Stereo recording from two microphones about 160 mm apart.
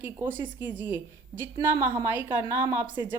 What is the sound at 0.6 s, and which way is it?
A woman's voice, 15° right (ahead or behind).